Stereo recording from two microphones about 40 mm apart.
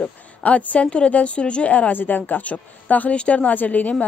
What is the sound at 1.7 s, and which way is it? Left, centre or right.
Speech, left.